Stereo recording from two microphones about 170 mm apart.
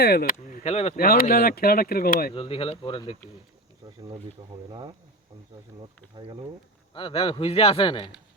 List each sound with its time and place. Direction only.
0.0 s speech: 65° left (ahead or behind)
0.6 s speech: 40° left (ahead or behind)
0.9 s speech: 60° left (ahead or behind)
2.3 s speech: 35° left (ahead or behind)
3.8 s speech: 20° right (ahead or behind)
6.1 s speech: 30° right (ahead or behind)
6.9 s speech: 30° left (ahead or behind)